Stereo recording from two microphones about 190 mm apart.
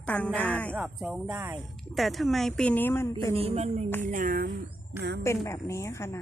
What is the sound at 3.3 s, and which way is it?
Music, 30° right (ahead or behind).